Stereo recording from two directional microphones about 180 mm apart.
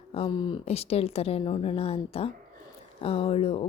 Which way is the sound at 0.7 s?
35° left (ahead or behind).